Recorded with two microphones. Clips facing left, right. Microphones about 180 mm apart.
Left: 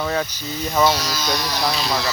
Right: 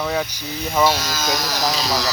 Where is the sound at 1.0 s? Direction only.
45° right (ahead or behind).